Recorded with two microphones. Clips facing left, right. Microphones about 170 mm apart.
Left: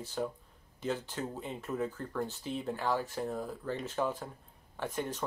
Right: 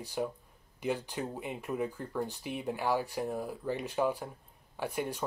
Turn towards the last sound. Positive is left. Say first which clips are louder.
# right 1 dB
turn(degrees=-10)  # may be behind; listen again after turning